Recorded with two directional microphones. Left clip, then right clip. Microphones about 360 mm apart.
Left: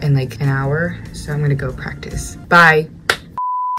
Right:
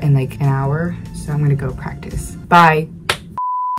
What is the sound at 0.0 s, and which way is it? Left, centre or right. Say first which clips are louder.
Speech: right 1 dB; centre.